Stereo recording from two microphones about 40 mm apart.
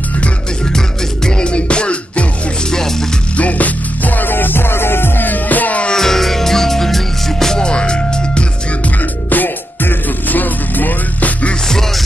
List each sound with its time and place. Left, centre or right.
0.7 s music: centre
2.7 s music: centre
3.3 s music: left
5.9 s music: centre
8.8 s music: left